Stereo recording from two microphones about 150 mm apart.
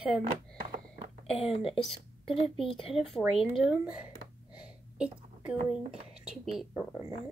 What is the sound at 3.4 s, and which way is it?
Speech, 5° right (ahead or behind).